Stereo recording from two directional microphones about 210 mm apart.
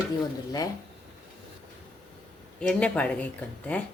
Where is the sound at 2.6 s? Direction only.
5° left (ahead or behind).